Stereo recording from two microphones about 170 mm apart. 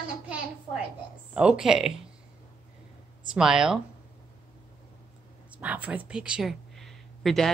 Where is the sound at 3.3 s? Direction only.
5° right (ahead or behind).